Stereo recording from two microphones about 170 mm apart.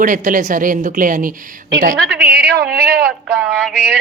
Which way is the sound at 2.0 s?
70° right (ahead or behind).